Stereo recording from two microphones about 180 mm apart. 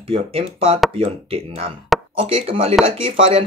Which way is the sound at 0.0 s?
30° right (ahead or behind).